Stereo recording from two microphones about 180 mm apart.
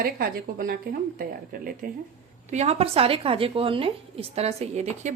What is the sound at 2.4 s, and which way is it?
A woman's voice, 35° right (ahead or behind).